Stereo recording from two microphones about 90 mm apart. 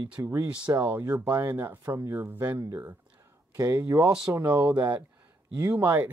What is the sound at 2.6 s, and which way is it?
Speech, 35° right (ahead or behind).